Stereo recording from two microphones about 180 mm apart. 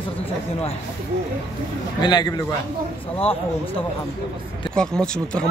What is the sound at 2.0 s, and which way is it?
A man's voice, 25° left (ahead or behind).